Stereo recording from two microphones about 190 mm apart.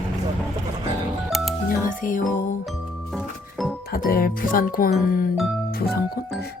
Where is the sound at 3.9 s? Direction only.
50° left (ahead or behind).